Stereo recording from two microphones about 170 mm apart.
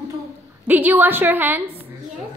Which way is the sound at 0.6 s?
10° right (ahead or behind).